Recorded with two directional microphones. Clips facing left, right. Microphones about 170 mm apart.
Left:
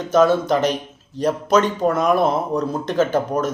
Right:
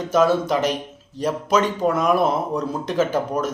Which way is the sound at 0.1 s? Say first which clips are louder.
Left 3 dB; 5° right (ahead or behind).